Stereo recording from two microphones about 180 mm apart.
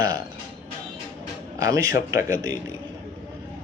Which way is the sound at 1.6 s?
20° right (ahead or behind).